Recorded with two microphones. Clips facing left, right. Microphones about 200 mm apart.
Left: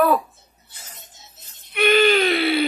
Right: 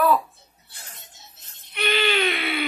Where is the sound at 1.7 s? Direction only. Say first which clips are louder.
Left 8 dB; 50° left (ahead or behind); by 2.6 s 35° left (ahead or behind).